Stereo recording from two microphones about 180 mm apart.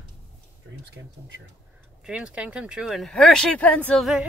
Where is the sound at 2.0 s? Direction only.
5° right (ahead or behind).